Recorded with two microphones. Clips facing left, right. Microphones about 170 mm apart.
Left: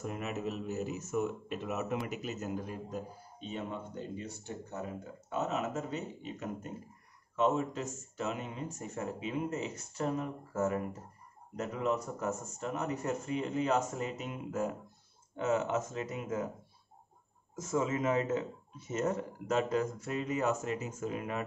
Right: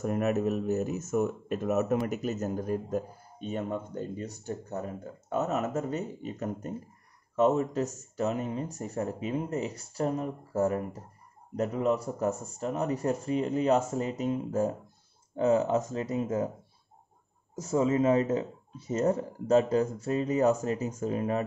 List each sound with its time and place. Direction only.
0.0 s speech: 50° right (ahead or behind)
17.6 s speech: 35° right (ahead or behind)